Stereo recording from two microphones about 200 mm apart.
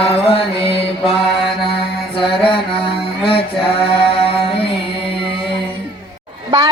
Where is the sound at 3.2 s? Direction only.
25° left (ahead or behind).